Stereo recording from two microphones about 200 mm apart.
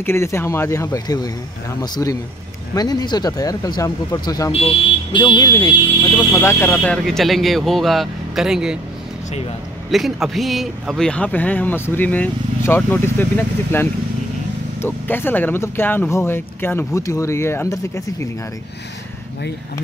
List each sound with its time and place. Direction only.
0.0 s speech: 15° left (ahead or behind)
4.5 s speech: 25° left (ahead or behind); by 8.7 s 5° right (ahead or behind)
9.8 s speech: centre (ahead or behind); by 18.3 s 15° left (ahead or behind)